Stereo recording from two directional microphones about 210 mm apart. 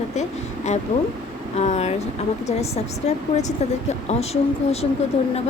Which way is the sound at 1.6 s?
30° left (ahead or behind).